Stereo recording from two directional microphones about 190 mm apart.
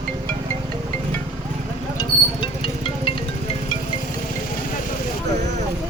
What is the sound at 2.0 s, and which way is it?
Music, 25° left (ahead or behind).